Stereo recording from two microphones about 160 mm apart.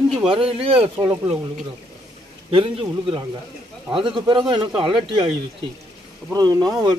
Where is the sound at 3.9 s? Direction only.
30° right (ahead or behind).